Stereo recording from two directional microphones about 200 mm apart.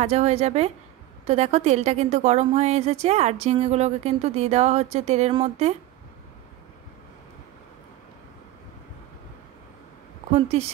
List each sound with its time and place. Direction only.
0.0 s a woman's voice: 35° right (ahead or behind)
10.3 s a woman's voice: 30° right (ahead or behind)